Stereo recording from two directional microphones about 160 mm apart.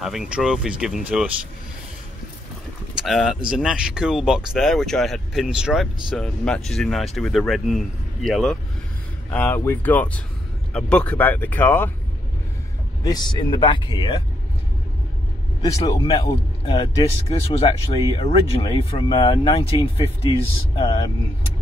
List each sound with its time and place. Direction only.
0.0 s speech: centre (ahead or behind)
3.0 s speech: centre (ahead or behind)
13.0 s speech: 25° left (ahead or behind)
15.8 s speech: 35° left (ahead or behind)